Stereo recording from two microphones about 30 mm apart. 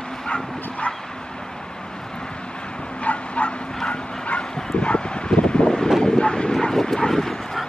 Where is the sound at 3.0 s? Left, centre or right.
Left.